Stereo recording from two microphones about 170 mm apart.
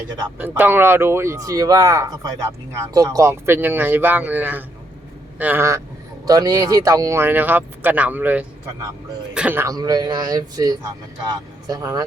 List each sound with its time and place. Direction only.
0.3 s speech: 10° right (ahead or behind)